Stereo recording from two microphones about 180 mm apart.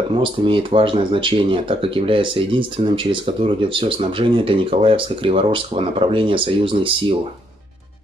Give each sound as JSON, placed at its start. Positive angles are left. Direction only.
{"t": 0.1, "sound": "speech", "side_deg": -30}